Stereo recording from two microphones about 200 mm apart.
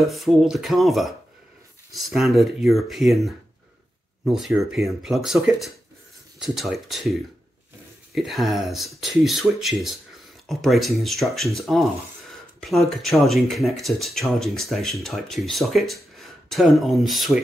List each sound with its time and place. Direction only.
0.0 s speech: centre (ahead or behind)